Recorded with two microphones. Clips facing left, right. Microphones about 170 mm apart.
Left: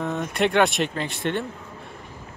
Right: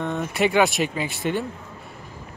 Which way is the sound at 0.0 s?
Centre (ahead or behind).